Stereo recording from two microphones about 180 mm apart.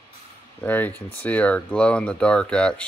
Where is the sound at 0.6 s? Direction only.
10° left (ahead or behind).